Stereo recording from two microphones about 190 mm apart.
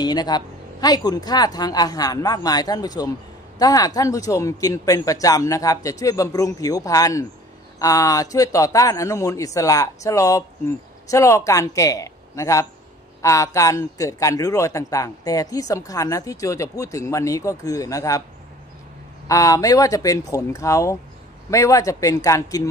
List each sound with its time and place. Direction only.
0.0 s a man's voice: 20° left (ahead or behind)
19.2 s a man's voice: 15° left (ahead or behind)